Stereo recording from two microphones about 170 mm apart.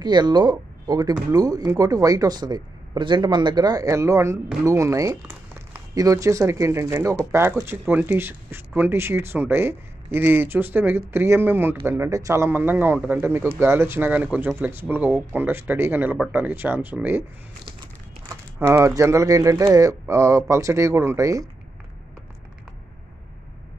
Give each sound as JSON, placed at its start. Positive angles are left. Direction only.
{"t": 0.0, "sound": "speech", "side_deg": -25}
{"t": 18.6, "sound": "speech", "side_deg": -15}